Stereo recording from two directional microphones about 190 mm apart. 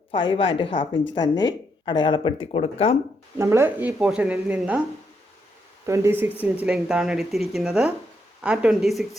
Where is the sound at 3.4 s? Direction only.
15° right (ahead or behind).